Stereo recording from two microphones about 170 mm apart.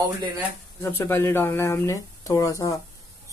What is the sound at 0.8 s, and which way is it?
Speech, 15° left (ahead or behind).